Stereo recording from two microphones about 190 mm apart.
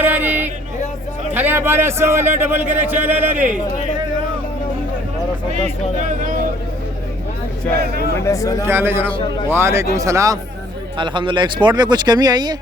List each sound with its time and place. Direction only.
0.0 s a sound: 10° right (ahead or behind)
1.3 s a man's voice: 10° right (ahead or behind)
8.1 s speech: 15° left (ahead or behind)
8.6 s a man's voice: 10° right (ahead or behind)